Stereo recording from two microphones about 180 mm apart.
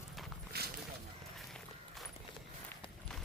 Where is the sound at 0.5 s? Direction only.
60° right (ahead or behind).